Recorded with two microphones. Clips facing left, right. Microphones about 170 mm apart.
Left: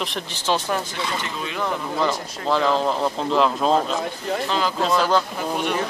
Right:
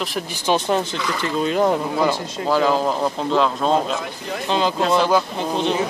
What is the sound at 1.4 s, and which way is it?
Speech, 40° right (ahead or behind).